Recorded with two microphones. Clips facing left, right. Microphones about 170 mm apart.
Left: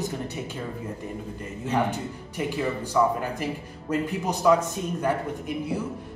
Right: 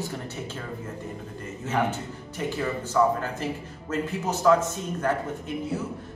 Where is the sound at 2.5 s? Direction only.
15° left (ahead or behind).